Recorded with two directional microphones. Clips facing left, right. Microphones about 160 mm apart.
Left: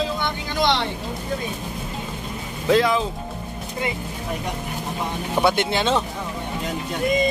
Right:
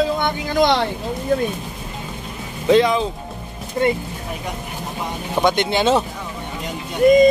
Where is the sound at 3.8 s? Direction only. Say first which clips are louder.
Right 9 dB; 45° right (ahead or behind).